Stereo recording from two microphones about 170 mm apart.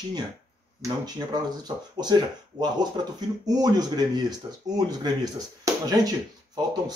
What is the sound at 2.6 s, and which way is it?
Speech, 25° right (ahead or behind).